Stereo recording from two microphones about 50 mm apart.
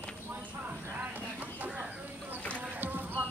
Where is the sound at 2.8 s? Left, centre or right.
Right.